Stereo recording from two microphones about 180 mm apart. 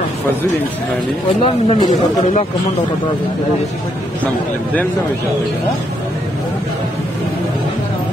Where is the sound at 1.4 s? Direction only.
30° left (ahead or behind).